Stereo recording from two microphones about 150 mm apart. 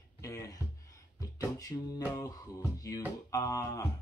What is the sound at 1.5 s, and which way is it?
Speech, 25° left (ahead or behind).